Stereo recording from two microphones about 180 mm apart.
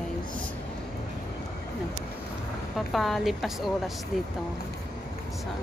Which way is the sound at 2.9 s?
Centre (ahead or behind).